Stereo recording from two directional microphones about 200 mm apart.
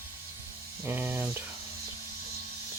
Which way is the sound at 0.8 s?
10° right (ahead or behind).